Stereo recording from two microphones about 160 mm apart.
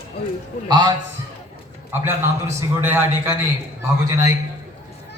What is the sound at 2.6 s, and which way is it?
Speech, 10° right (ahead or behind).